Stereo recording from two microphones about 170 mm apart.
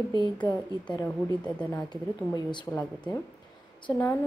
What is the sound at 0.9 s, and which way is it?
Speech, 10° left (ahead or behind).